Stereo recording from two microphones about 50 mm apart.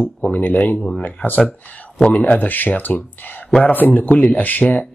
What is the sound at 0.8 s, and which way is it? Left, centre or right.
Speech, centre.